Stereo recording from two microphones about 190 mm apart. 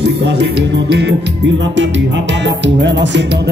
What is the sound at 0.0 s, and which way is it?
Music, 65° right (ahead or behind).